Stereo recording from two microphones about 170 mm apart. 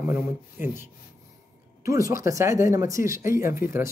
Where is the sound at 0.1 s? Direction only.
15° right (ahead or behind).